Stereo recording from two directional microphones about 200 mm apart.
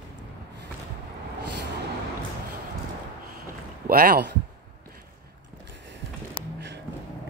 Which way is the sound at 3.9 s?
45° right (ahead or behind).